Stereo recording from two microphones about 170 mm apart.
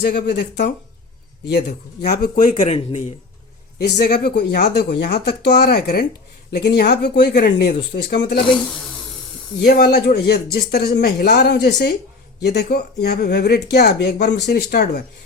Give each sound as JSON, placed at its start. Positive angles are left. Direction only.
{"t": 0.1, "sound": "a man's voice", "side_deg": 75}
{"t": 3.8, "sound": "speech", "side_deg": 75}
{"t": 7.4, "sound": "a man's voice", "side_deg": 65}
{"t": 8.1, "sound": "speech", "side_deg": 85}
{"t": 9.6, "sound": "a man's voice", "side_deg": 70}